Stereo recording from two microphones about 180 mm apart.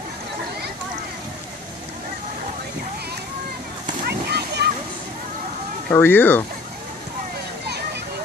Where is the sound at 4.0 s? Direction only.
60° right (ahead or behind).